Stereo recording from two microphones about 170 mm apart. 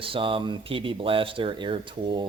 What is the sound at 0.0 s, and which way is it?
A man's voice, 30° right (ahead or behind).